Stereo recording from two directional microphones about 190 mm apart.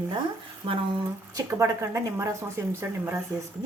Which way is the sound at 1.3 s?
15° right (ahead or behind).